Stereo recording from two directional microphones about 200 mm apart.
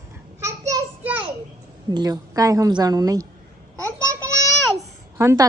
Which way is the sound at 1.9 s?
20° right (ahead or behind).